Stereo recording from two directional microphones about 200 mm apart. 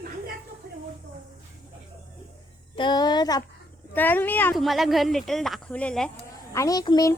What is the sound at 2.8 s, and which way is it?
Speech, 20° left (ahead or behind).